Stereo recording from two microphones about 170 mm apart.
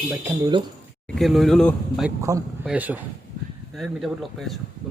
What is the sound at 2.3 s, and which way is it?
Speech, 20° right (ahead or behind).